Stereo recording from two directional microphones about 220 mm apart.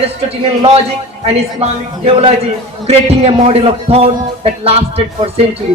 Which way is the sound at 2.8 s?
30° right (ahead or behind).